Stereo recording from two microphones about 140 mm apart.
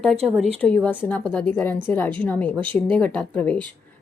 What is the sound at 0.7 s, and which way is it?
A woman's voice, 10° left (ahead or behind).